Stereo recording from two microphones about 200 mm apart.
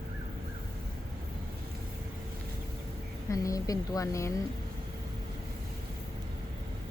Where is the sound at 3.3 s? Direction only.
15° left (ahead or behind).